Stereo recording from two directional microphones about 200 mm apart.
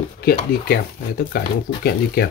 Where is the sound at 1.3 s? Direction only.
50° left (ahead or behind).